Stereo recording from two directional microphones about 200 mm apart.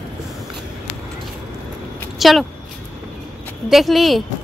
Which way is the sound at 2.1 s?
Centre (ahead or behind).